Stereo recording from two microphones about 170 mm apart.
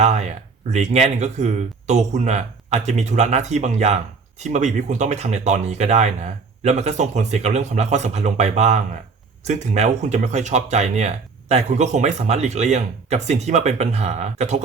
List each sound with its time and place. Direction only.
0.0 s speech: 40° right (ahead or behind)